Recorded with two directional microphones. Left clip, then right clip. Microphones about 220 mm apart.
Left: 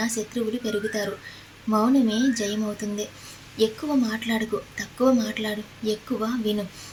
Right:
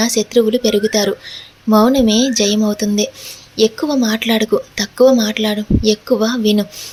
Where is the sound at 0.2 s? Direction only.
40° right (ahead or behind).